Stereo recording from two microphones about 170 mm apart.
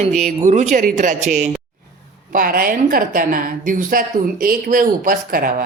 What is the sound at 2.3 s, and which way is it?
A woman's voice, 55° right (ahead or behind).